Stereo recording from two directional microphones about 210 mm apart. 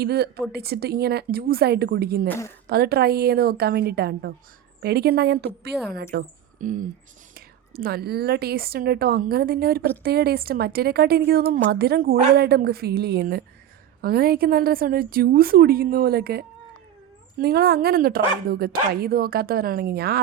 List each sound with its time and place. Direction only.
0.0 s a woman's voice: 50° right (ahead or behind)
2.2 s a woman's voice: 10° left (ahead or behind)
2.6 s a woman's voice: 50° right (ahead or behind)